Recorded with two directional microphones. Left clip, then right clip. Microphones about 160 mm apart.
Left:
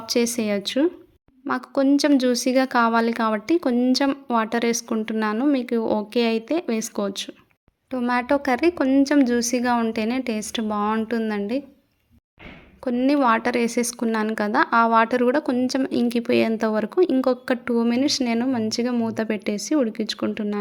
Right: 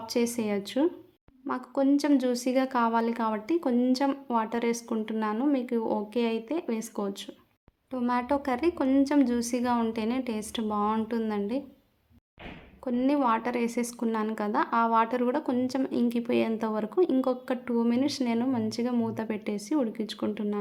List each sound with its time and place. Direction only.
0.0 s speech: 20° left (ahead or behind)
12.8 s speech: 20° left (ahead or behind)